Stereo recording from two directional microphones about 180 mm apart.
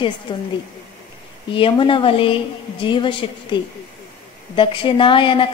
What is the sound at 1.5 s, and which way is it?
A woman's voice, 30° left (ahead or behind).